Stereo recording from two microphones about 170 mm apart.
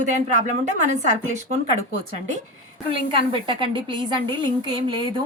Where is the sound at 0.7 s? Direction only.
45° right (ahead or behind).